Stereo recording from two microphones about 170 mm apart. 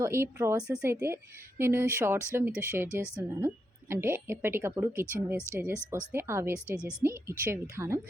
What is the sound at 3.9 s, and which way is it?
A woman's voice, 15° right (ahead or behind).